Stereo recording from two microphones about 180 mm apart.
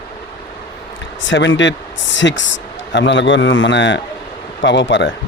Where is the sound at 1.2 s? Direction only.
90° left.